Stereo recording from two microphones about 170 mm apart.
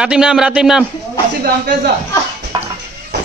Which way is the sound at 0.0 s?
5° right (ahead or behind).